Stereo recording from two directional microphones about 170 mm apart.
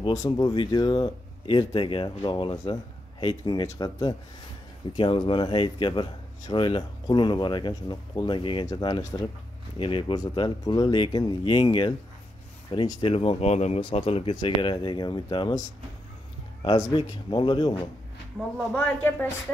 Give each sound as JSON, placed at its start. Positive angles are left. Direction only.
{"t": 0.1, "sound": "speech", "side_deg": 20}
{"t": 16.6, "sound": "speech", "side_deg": 25}
{"t": 18.8, "sound": "speech", "side_deg": 10}